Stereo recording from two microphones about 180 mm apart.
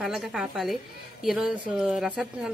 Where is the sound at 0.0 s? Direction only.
Centre (ahead or behind).